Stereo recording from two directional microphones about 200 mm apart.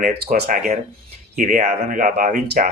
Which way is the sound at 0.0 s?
50° right (ahead or behind).